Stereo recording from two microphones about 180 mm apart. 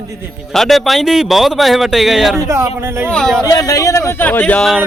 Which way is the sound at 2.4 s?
15° right (ahead or behind).